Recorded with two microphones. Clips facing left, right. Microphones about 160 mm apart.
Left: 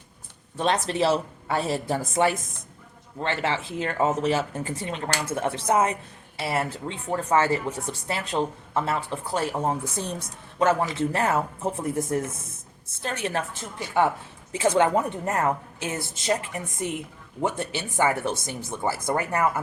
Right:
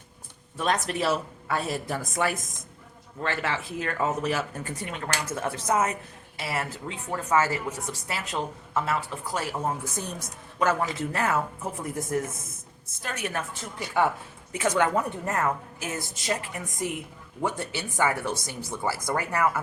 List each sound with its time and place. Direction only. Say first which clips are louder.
0.5 s speech: left 2 dB; 30° left (ahead or behind)
14.5 s speech: left 3 dB; 25° left (ahead or behind)